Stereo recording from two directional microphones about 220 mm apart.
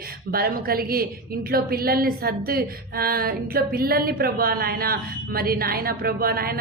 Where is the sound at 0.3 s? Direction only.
45° right (ahead or behind).